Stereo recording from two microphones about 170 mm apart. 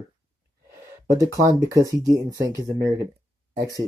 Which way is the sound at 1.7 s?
20° right (ahead or behind).